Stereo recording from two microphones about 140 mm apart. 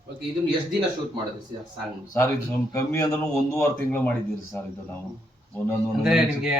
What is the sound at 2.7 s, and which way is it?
A man's voice, 20° left (ahead or behind).